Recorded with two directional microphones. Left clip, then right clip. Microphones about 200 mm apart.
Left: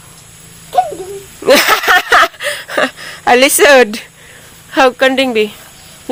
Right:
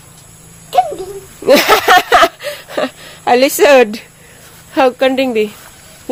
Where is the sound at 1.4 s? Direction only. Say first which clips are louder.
Even; centre (ahead or behind).